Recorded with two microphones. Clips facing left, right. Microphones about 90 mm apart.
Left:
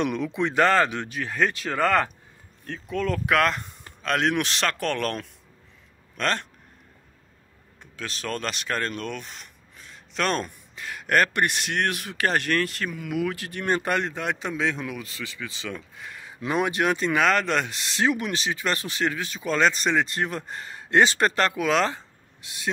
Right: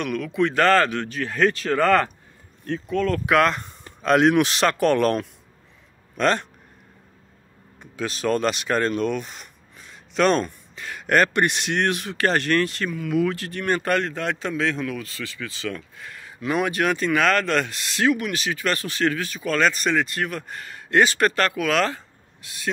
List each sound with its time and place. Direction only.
0.0 s speech: 25° left (ahead or behind); by 3.7 s centre (ahead or behind)
4.0 s a man's voice: 10° right (ahead or behind)
7.8 s speech: 10° right (ahead or behind); by 22.7 s 20° left (ahead or behind)